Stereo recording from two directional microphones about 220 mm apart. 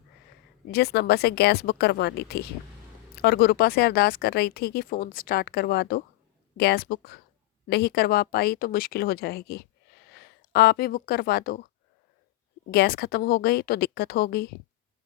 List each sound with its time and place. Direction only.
0.7 s speech: 45° left (ahead or behind)
12.7 s speech: 45° left (ahead or behind)